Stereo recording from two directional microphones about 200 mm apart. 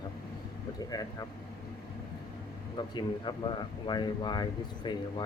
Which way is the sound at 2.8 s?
20° left (ahead or behind).